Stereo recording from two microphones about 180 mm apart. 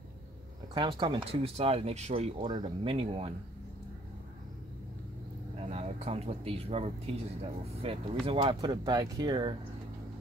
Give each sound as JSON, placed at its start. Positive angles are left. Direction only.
{"t": 0.7, "sound": "speech", "side_deg": -25}
{"t": 5.6, "sound": "speech", "side_deg": -35}